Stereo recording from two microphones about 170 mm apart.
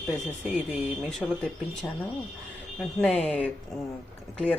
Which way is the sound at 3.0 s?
5° left (ahead or behind).